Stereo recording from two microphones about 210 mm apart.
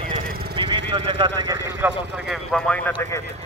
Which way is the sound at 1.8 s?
5° right (ahead or behind).